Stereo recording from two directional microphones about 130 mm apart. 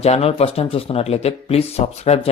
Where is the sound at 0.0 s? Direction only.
50° left (ahead or behind).